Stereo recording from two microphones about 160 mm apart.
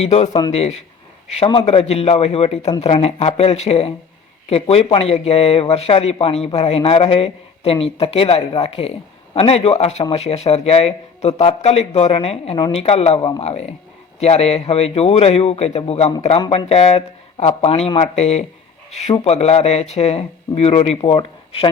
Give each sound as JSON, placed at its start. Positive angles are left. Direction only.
{"t": 0.0, "sound": "speech", "side_deg": 40}
{"t": 13.1, "sound": "speech", "side_deg": 25}
{"t": 13.4, "sound": "speech", "side_deg": 40}